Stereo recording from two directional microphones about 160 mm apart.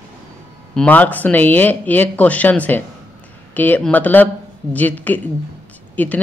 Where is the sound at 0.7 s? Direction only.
10° left (ahead or behind).